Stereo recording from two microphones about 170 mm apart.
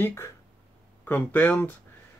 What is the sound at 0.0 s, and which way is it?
Speech, 15° left (ahead or behind).